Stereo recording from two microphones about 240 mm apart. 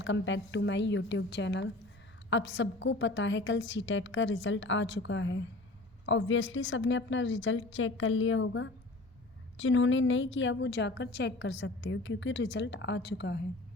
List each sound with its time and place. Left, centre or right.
0.0 s a woman's voice: left